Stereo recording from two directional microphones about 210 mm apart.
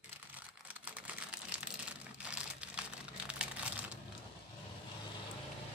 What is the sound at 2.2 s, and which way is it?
Crumpling, 5° right (ahead or behind).